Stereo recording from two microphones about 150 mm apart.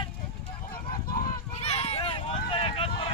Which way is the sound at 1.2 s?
45° left (ahead or behind).